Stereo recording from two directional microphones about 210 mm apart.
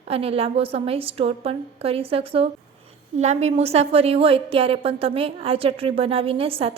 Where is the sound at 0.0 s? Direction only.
30° right (ahead or behind).